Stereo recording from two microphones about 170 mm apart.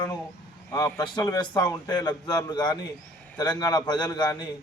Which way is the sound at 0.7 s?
20° left (ahead or behind).